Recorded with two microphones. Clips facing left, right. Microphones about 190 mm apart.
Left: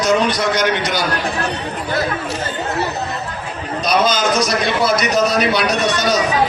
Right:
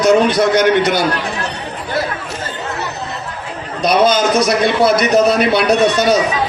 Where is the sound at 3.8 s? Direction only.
60° right (ahead or behind).